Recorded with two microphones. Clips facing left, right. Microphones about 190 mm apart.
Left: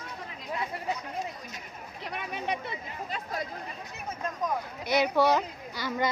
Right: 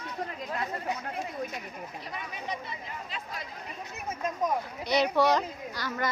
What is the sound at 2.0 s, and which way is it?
Speech, 65° left (ahead or behind).